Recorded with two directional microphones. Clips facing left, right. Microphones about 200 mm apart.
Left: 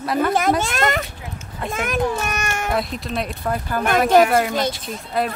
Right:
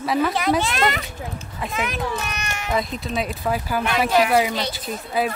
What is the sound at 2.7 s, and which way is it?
Speech, centre (ahead or behind).